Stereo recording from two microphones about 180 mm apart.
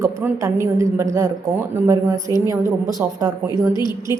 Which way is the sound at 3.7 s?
20° left (ahead or behind).